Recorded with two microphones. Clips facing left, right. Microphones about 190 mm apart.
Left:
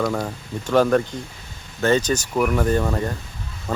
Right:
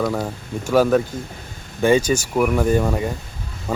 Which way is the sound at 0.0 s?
5° right (ahead or behind).